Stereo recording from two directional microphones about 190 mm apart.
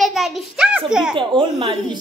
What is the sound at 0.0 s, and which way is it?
A child's voice, centre (ahead or behind).